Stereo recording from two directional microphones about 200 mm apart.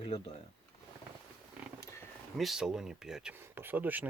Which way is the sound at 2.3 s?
Centre (ahead or behind).